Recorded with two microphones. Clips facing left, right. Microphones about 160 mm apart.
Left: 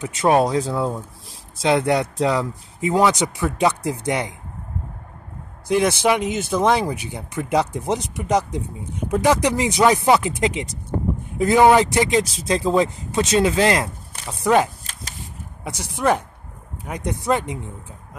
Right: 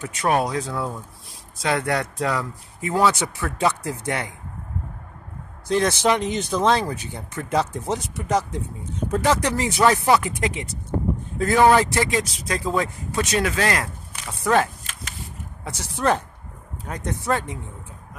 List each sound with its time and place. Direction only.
0.0 s speech: 25° left (ahead or behind)
5.7 s speech: 15° left (ahead or behind)